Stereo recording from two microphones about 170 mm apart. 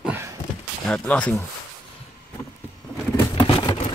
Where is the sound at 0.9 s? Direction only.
5° left (ahead or behind).